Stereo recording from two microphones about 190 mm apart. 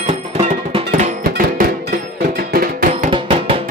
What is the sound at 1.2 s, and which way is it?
Music, 55° right (ahead or behind).